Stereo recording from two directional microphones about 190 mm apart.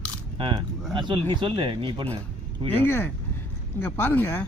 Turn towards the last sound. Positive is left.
turn(degrees=10)  # may be behind; listen again after turning